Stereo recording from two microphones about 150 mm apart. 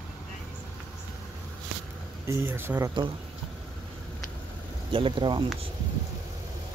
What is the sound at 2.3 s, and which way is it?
Speech, 15° right (ahead or behind).